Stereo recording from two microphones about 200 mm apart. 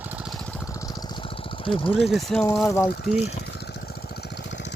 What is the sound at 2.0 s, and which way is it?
Speech, centre (ahead or behind).